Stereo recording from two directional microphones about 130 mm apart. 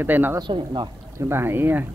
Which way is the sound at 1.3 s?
15° right (ahead or behind).